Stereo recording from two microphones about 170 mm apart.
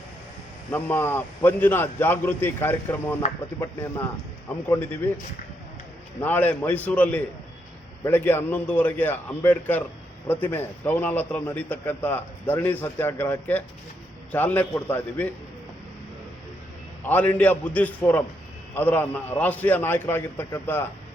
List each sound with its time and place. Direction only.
0.7 s a man's voice: 10° left (ahead or behind)
4.4 s a man's voice: 10° left (ahead or behind)
6.1 s a man's voice: 10° left (ahead or behind)
17.0 s a man's voice: 10° left (ahead or behind)